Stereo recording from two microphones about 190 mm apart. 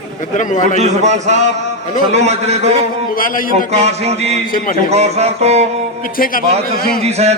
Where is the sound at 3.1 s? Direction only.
50° left (ahead or behind).